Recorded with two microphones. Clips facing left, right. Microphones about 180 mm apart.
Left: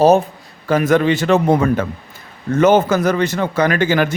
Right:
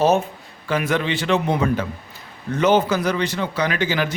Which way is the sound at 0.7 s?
45° left (ahead or behind).